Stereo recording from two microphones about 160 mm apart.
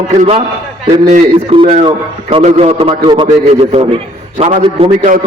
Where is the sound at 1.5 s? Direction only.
35° right (ahead or behind).